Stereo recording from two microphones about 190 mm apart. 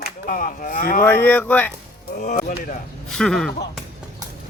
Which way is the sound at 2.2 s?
40° left (ahead or behind).